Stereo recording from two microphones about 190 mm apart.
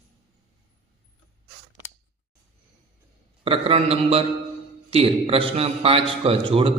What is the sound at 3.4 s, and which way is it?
A man's voice, 30° right (ahead or behind).